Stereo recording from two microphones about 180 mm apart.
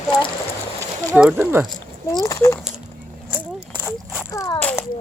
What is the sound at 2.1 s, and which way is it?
Speech, 20° left (ahead or behind).